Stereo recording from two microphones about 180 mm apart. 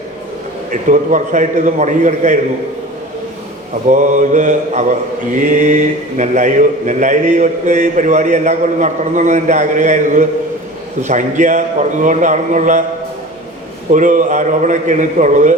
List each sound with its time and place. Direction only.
0.9 s a man's voice: 45° right (ahead or behind)
3.8 s a man's voice: 45° right (ahead or behind)
13.9 s a man's voice: 45° right (ahead or behind)